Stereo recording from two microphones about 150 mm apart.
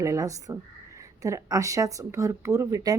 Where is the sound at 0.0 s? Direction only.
20° right (ahead or behind).